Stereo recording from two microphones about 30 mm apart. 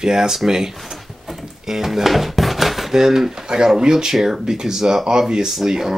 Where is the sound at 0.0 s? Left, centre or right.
Right.